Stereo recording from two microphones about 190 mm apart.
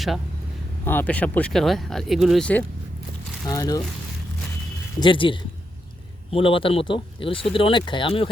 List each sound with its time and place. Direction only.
0.9 s speech: 10° left (ahead or behind)
3.4 s speech: 20° left (ahead or behind)
4.9 s speech: 25° left (ahead or behind)